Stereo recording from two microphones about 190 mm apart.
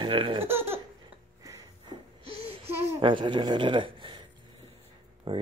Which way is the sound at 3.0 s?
25° right (ahead or behind).